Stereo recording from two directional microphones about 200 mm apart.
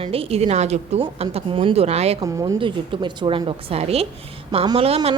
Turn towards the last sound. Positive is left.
turn(degrees=-30)  # may be behind; listen again after turning